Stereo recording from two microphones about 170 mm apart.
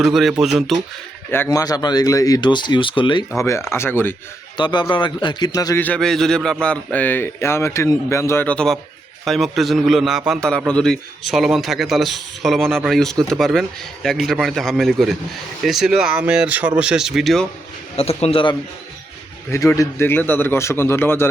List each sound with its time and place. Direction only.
0.0 s a man's voice: centre (ahead or behind)
1.3 s speech: 15° left (ahead or behind)
3.3 s a man's voice: 15° left (ahead or behind)
4.5 s speech: 25° left (ahead or behind)
5.8 s a man's voice: 5° left (ahead or behind)
17.9 s a man's voice: 35° left (ahead or behind)
19.5 s a man's voice: 20° left (ahead or behind)